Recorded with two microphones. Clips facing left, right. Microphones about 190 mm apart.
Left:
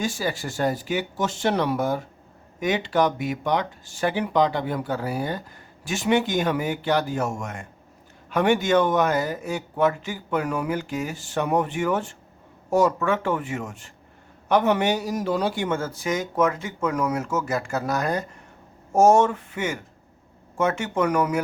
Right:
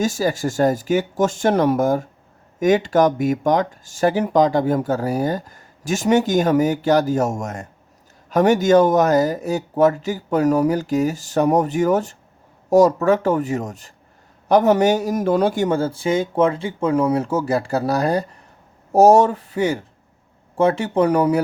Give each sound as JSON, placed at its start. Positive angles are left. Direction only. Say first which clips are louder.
{"t": 0.0, "sound": "a man's voice", "louder": "right 7 dB", "side_deg": -40}